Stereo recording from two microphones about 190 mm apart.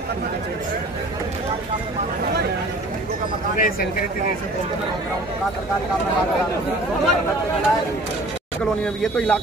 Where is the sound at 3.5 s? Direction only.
50° left (ahead or behind).